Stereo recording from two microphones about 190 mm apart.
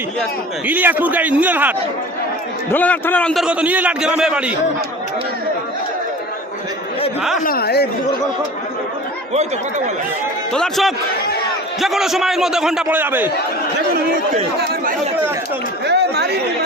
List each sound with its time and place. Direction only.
0.7 s a man's voice: 10° right (ahead or behind)
2.7 s a man's voice: 10° left (ahead or behind)
7.2 s a man's voice: 5° right (ahead or behind)
7.4 s speech: 55° left (ahead or behind)
9.3 s speech: 35° right (ahead or behind)
10.5 s a man's voice: centre (ahead or behind)
15.9 s chatter: 60° right (ahead or behind)